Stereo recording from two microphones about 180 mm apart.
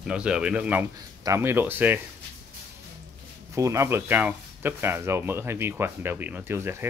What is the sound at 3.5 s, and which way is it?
Speech, 15° right (ahead or behind).